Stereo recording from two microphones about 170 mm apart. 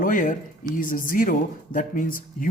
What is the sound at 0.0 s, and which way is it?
Speech, 50° left (ahead or behind).